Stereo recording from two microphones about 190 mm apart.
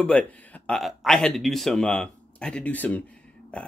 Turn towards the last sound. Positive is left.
turn(degrees=5)  # may be behind; listen again after turning